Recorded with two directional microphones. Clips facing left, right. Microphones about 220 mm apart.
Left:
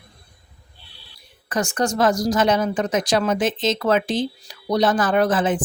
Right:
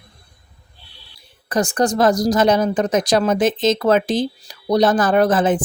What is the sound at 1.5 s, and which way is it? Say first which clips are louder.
Speech: right 4 dB; 35° right (ahead or behind).